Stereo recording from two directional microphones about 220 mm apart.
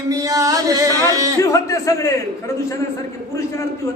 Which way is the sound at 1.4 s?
15° left (ahead or behind).